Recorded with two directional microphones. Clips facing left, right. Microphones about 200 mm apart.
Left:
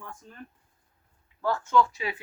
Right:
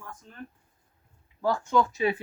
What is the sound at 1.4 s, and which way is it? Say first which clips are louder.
Speech: even; 15° right (ahead or behind).